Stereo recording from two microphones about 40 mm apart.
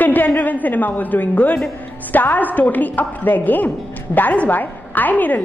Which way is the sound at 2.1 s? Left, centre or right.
Left.